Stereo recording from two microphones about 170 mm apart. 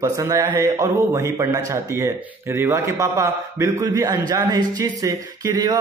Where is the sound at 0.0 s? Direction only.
20° right (ahead or behind).